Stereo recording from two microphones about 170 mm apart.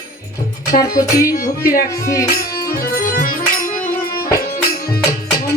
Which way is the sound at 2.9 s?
55° left (ahead or behind).